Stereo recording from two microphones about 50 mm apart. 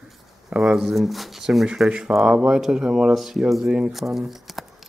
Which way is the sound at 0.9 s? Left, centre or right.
Centre.